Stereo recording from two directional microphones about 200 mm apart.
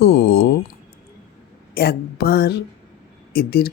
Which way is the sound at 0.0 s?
55° left (ahead or behind).